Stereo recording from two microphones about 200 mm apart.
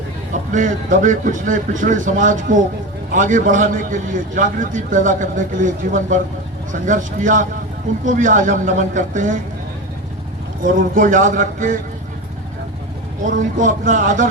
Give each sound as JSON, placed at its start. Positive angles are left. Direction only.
{"t": 0.5, "sound": "a man's voice", "side_deg": -40}
{"t": 10.6, "sound": "a man's voice", "side_deg": -40}
{"t": 13.2, "sound": "a man's voice", "side_deg": -40}